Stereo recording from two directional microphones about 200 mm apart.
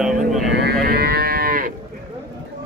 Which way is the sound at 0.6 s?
50° right (ahead or behind).